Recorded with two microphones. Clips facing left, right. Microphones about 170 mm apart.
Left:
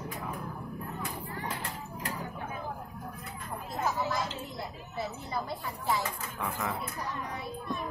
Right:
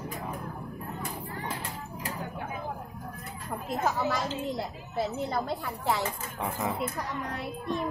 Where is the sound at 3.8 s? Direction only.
75° right (ahead or behind).